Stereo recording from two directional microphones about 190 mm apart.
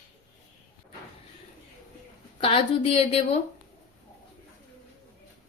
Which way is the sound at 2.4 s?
30° left (ahead or behind).